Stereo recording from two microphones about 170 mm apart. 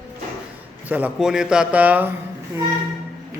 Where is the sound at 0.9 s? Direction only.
10° right (ahead or behind).